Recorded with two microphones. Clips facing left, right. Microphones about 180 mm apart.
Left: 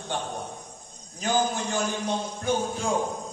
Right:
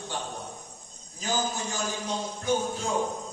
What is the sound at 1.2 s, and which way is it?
Speech, 60° left (ahead or behind).